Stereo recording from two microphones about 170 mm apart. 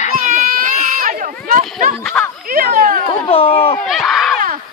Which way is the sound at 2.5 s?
55° right (ahead or behind).